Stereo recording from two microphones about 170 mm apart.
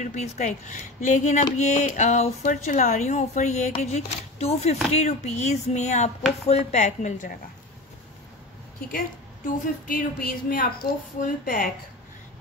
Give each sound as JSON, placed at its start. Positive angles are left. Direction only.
{"t": 0.0, "sound": "speech", "side_deg": 45}
{"t": 9.8, "sound": "a woman's voice", "side_deg": 60}